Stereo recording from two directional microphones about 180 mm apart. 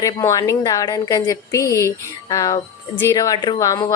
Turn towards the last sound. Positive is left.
turn(degrees=20)  # may be behind; listen again after turning